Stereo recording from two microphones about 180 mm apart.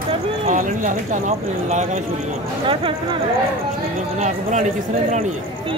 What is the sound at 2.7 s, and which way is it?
Speech, 30° right (ahead or behind).